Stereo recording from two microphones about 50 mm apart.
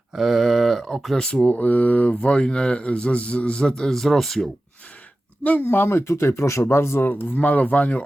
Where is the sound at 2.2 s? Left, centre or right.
Left.